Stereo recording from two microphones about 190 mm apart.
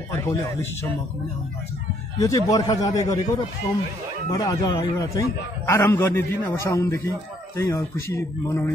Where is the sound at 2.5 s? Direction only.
20° left (ahead or behind).